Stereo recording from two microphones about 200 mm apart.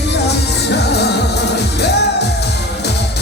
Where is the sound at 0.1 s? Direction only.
55° left (ahead or behind).